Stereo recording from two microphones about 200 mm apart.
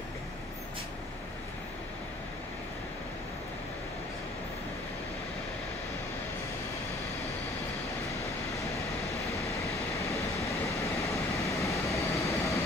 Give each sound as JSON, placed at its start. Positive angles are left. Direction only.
{"t": 10.0, "sound": "vehicle", "side_deg": 15}